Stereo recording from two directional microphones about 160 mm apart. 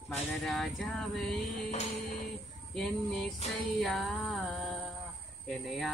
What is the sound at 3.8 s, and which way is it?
Music, 5° left (ahead or behind).